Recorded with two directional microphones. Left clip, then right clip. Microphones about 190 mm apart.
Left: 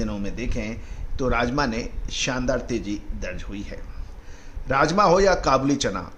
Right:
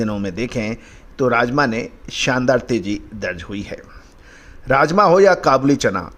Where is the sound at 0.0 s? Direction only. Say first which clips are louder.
Right 8 dB; 35° right (ahead or behind).